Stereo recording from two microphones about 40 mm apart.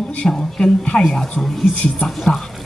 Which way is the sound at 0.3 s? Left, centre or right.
Centre.